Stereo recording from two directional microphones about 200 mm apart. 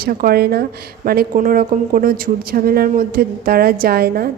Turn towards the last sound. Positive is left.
turn(degrees=-50)  # may be behind; listen again after turning